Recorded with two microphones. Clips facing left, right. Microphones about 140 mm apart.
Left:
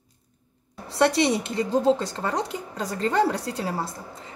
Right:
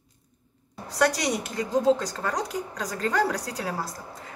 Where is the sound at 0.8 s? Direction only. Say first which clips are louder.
Left 4 dB; 25° left (ahead or behind).